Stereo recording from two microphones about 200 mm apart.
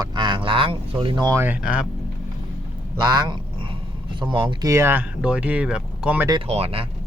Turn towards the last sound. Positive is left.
turn(degrees=-30)  # may be behind; listen again after turning